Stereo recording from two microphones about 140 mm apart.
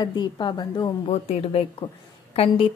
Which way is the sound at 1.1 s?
45° left (ahead or behind).